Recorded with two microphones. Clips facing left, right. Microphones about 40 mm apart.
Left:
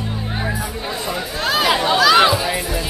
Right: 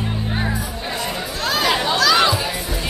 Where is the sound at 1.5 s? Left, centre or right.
Centre.